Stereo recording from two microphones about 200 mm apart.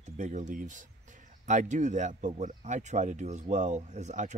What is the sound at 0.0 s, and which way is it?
Speech, 40° right (ahead or behind).